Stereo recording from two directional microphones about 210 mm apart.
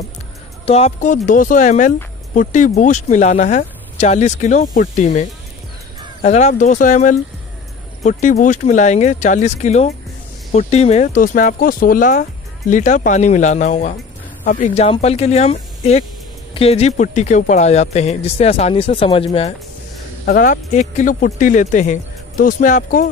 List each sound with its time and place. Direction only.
0.7 s speech: 30° left (ahead or behind)
6.2 s speech: 35° left (ahead or behind)
20.2 s speech: 40° left (ahead or behind)